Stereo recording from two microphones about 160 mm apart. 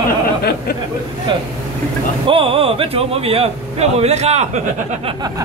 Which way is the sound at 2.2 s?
35° right (ahead or behind).